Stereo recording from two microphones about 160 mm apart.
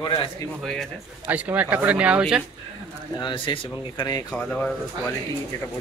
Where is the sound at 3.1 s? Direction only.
30° left (ahead or behind).